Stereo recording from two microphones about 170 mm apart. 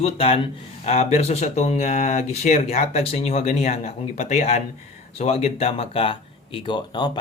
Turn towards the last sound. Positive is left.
turn(degrees=25)  # may be behind; listen again after turning